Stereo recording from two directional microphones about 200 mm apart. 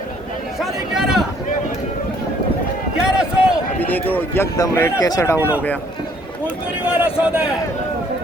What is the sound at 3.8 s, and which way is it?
Speech, 10° left (ahead or behind).